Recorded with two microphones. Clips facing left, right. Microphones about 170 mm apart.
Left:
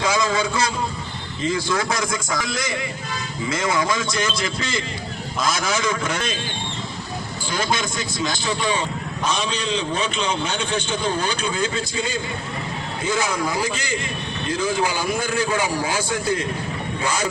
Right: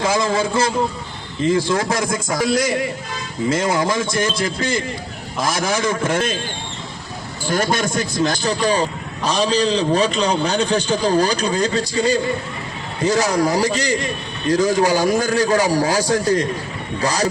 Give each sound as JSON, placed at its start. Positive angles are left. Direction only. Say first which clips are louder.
{"t": 0.3, "sound": "a man's voice", "louder": "right 4 dB", "side_deg": -50}
{"t": 7.4, "sound": "a man's voice", "louder": "right 5 dB", "side_deg": -45}
{"t": 8.4, "sound": "a man's voice", "louder": "right 5 dB", "side_deg": -40}